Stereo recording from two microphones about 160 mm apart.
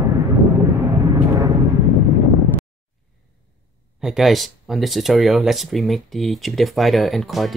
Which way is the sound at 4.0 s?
5° right (ahead or behind).